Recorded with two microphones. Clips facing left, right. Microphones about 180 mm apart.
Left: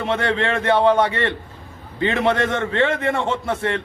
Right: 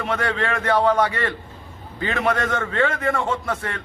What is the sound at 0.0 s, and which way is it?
Speech, 25° left (ahead or behind).